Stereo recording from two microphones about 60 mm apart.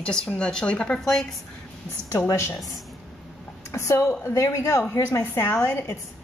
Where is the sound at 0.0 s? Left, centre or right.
Centre.